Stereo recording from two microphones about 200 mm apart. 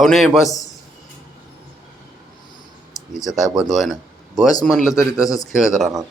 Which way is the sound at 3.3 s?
Centre (ahead or behind).